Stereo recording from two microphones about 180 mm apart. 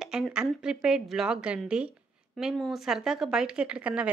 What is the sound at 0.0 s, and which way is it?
A woman's voice, 5° right (ahead or behind).